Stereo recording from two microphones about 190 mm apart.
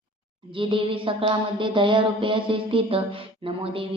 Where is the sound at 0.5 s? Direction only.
25° right (ahead or behind).